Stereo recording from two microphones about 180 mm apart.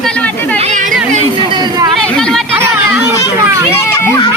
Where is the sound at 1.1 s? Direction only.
25° right (ahead or behind).